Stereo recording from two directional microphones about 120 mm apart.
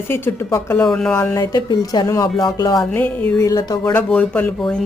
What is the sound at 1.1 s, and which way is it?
Speech, 25° left (ahead or behind).